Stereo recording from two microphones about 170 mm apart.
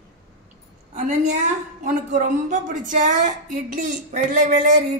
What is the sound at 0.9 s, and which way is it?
A woman's voice, 45° right (ahead or behind).